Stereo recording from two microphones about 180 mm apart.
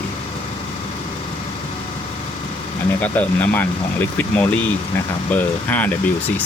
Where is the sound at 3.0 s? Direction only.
10° left (ahead or behind).